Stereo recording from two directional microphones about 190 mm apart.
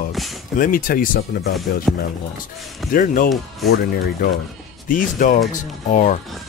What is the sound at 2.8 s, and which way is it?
Speech, 45° left (ahead or behind).